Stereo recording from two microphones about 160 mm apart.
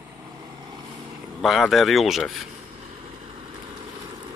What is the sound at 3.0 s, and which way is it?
Vehicle, 35° right (ahead or behind).